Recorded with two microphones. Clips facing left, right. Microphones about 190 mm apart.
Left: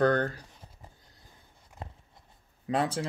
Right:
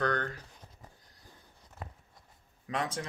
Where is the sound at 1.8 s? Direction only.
30° left (ahead or behind).